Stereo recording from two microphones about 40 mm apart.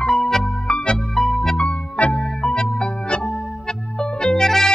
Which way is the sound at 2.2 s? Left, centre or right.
Centre.